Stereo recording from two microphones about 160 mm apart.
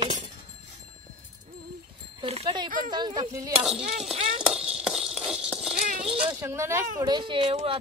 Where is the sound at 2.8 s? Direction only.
25° right (ahead or behind).